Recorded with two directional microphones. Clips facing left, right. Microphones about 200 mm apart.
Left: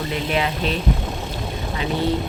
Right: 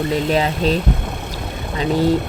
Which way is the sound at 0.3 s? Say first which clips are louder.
Right 3 dB; 35° right (ahead or behind).